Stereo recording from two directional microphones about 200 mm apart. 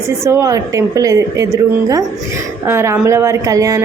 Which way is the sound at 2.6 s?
10° right (ahead or behind).